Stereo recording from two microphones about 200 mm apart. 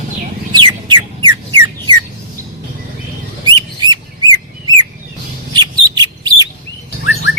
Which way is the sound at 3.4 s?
20° right (ahead or behind).